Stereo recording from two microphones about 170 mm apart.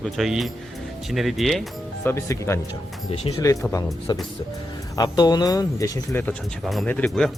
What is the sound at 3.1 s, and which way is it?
Speech, 35° left (ahead or behind).